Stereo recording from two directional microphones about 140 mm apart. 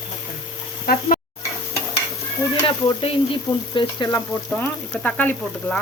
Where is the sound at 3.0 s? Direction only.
35° left (ahead or behind).